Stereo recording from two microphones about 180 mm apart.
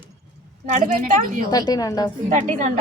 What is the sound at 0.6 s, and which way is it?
Speech, 45° right (ahead or behind).